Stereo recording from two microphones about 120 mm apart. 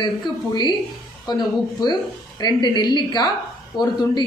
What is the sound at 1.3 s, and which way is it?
A woman's voice, 35° left (ahead or behind).